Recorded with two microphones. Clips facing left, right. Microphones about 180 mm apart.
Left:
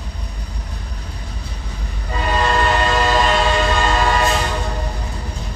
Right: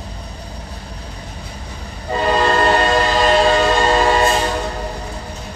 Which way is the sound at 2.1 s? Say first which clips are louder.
Right 3 dB; 35° right (ahead or behind).